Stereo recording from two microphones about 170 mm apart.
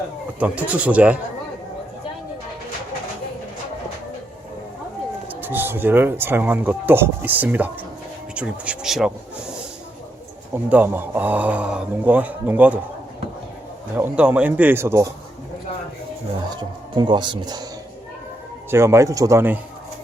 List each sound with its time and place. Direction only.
0.3 s speech: 10° right (ahead or behind)
5.3 s speech: 10° right (ahead or behind)
10.5 s speech: 10° right (ahead or behind)
13.9 s speech: 10° right (ahead or behind)
16.6 s speech: 25° right (ahead or behind)
18.7 s speech: 15° right (ahead or behind)